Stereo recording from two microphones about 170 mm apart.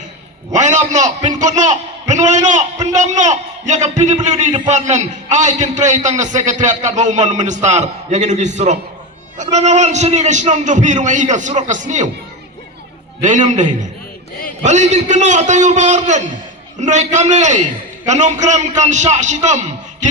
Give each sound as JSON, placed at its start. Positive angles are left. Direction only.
{"t": 0.5, "sound": "a man's voice", "side_deg": -45}
{"t": 13.2, "sound": "a man's voice", "side_deg": -45}